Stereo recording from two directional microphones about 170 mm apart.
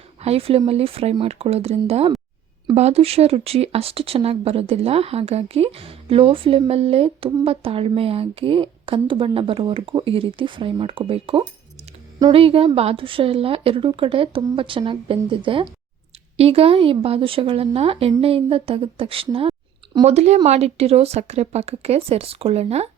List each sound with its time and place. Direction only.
0.2 s a woman's voice: 35° right (ahead or behind)